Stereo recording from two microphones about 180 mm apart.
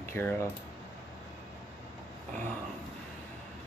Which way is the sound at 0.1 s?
15° left (ahead or behind).